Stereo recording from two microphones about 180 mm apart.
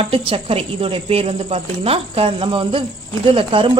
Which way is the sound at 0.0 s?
30° right (ahead or behind).